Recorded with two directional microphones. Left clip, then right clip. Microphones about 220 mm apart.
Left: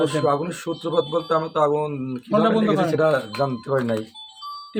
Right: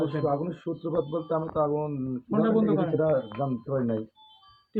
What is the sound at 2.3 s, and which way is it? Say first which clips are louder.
Speech: left 6 dB; 60° left (ahead or behind).